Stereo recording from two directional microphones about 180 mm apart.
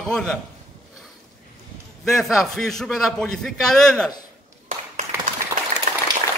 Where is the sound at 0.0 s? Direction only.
Centre (ahead or behind).